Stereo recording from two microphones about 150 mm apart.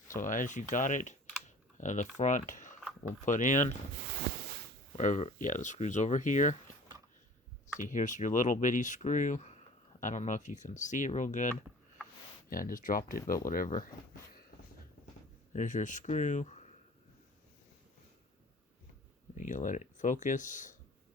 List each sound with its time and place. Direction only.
0.1 s speech: 60° left (ahead or behind)
4.3 s a sound: 90° right
4.9 s speech: 50° left (ahead or behind)
7.8 s speech: 60° left (ahead or behind)
12.5 s speech: 70° left (ahead or behind)
15.5 s speech: 60° left (ahead or behind)
19.4 s speech: 55° left (ahead or behind)